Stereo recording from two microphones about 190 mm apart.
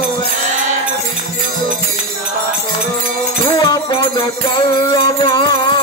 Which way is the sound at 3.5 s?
25° left (ahead or behind).